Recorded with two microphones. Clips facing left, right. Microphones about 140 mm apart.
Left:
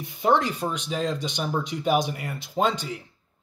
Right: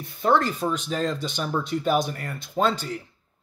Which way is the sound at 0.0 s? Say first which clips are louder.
Right 1 dB; 20° left (ahead or behind).